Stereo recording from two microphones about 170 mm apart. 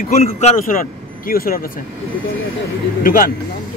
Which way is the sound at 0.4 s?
45° left (ahead or behind).